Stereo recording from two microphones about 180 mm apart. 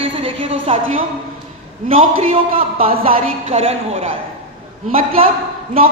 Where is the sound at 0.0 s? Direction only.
30° right (ahead or behind).